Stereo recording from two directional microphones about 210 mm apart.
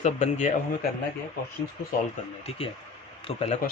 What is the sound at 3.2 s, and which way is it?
Speech, 30° left (ahead or behind).